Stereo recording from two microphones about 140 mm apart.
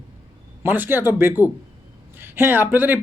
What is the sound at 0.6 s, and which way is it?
Speech, 15° right (ahead or behind).